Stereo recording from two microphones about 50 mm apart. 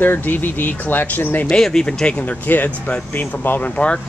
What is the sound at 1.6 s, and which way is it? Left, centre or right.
Speech, centre.